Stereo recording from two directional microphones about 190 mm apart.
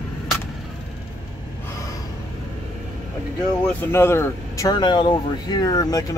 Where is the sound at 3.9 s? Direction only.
15° left (ahead or behind).